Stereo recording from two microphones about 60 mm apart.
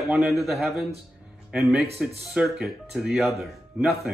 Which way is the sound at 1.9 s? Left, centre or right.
Centre.